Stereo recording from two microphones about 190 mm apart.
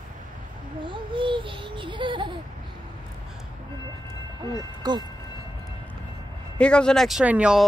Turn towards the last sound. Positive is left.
turn(degrees=-5)  # may be behind; listen again after turning